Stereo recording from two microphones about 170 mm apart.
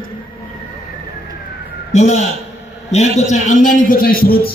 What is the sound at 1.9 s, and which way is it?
A man's voice, 40° left (ahead or behind).